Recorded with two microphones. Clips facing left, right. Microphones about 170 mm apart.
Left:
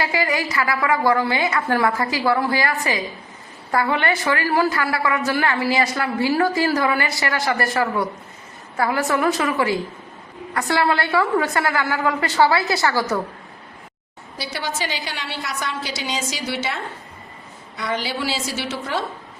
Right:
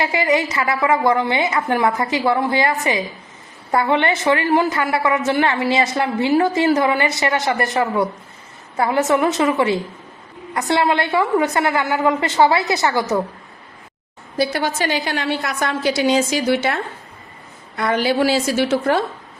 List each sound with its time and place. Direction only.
0.0 s a woman's voice: 20° right (ahead or behind)
14.3 s a woman's voice: 50° right (ahead or behind)